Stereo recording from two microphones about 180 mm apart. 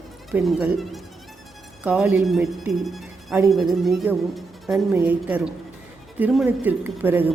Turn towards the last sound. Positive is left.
turn(degrees=-10)  # may be behind; listen again after turning